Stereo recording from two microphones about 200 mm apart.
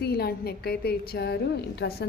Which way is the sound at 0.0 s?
50° left (ahead or behind).